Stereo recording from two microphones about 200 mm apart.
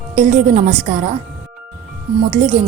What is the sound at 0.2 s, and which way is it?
Speech, 40° right (ahead or behind).